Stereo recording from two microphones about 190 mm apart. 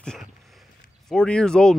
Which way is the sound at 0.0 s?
5° left (ahead or behind).